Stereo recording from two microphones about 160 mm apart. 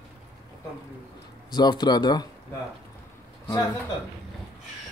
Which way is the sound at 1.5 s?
25° left (ahead or behind).